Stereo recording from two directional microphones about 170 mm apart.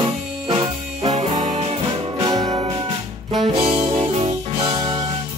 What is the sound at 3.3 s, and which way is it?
Saxophone, 30° right (ahead or behind).